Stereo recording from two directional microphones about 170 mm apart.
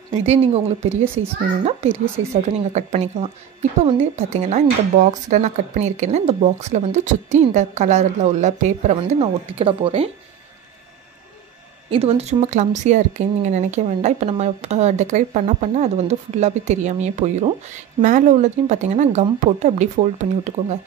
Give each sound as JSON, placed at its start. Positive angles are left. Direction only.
{"t": 0.1, "sound": "speech", "side_deg": -35}
{"t": 11.9, "sound": "speech", "side_deg": -35}